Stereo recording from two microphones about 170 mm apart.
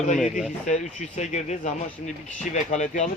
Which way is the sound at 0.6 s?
45° left (ahead or behind).